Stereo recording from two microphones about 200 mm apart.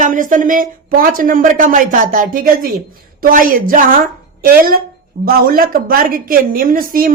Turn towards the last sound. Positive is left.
turn(degrees=-45)  # may be behind; listen again after turning